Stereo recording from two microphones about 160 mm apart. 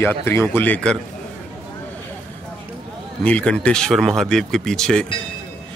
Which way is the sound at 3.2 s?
5° left (ahead or behind).